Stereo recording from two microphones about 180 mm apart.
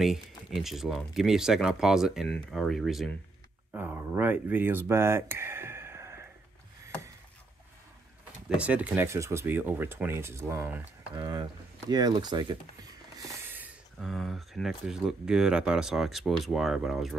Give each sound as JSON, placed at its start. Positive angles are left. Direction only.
{"t": 0.6, "sound": "speech", "side_deg": 0}
{"t": 3.7, "sound": "a sound", "side_deg": -10}
{"t": 8.5, "sound": "speech", "side_deg": -5}
{"t": 13.2, "sound": "speech", "side_deg": -10}